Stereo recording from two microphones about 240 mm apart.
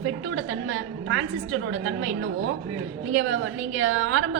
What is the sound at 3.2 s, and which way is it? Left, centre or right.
A woman's voice, right.